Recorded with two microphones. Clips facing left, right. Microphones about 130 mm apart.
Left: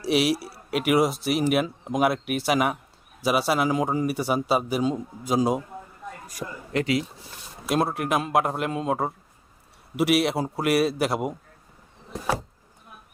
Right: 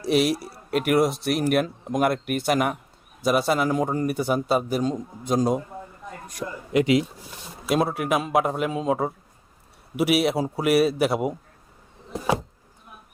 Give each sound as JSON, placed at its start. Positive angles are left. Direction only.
{"t": 0.0, "sound": "speech", "side_deg": 0}
{"t": 6.7, "sound": "speech", "side_deg": -20}
{"t": 7.7, "sound": "speech", "side_deg": 0}